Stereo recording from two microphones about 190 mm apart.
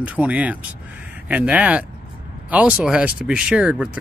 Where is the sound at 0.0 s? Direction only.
5° right (ahead or behind).